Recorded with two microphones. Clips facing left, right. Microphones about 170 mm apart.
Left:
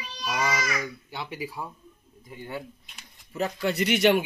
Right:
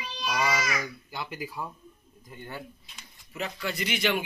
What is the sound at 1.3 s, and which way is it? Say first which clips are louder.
Speech: left 1 dB; 5° left (ahead or behind).